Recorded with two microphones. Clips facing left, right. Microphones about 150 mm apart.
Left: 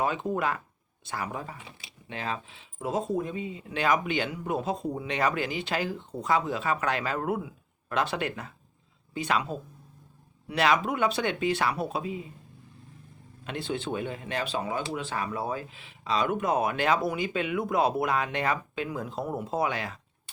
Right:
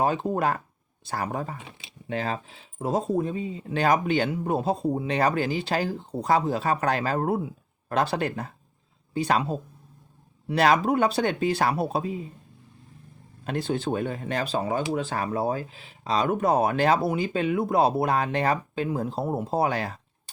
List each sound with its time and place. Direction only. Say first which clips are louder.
0.0 s speech: right 4 dB; 35° right (ahead or behind)
13.4 s speech: right 5 dB; 40° right (ahead or behind)